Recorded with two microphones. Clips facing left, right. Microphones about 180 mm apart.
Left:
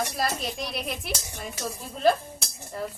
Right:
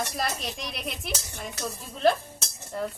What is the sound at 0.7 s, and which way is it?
Speech, centre (ahead or behind).